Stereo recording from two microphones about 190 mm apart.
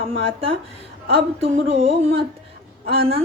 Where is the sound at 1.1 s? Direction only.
30° right (ahead or behind).